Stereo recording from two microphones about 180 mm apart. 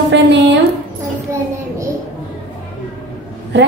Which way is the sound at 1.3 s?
15° right (ahead or behind).